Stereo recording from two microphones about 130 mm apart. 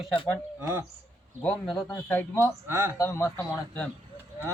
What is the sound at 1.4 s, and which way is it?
Speech, 5° left (ahead or behind).